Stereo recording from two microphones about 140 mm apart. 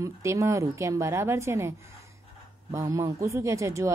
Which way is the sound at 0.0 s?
20° right (ahead or behind).